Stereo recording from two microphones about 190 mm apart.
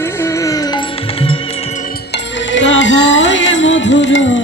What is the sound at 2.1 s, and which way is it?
Music, 75° left (ahead or behind).